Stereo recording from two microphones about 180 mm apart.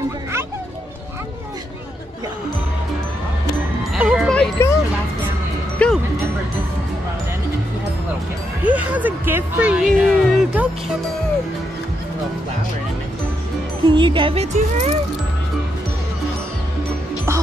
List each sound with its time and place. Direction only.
3.9 s music: 5° right (ahead or behind)
4.3 s music: 5° left (ahead or behind)
5.8 s music: 10° left (ahead or behind)
8.6 s music: 10° right (ahead or behind)
13.8 s speech: 25° right (ahead or behind)